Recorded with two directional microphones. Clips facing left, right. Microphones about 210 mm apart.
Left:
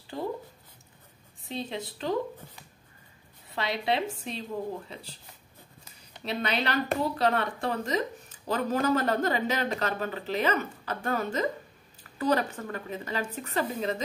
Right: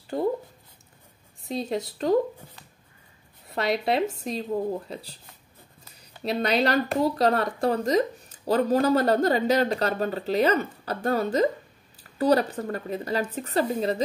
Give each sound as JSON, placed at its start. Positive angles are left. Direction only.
{"t": 1.5, "sound": "speech", "side_deg": -40}
{"t": 3.8, "sound": "speech", "side_deg": -40}
{"t": 6.2, "sound": "speech", "side_deg": -40}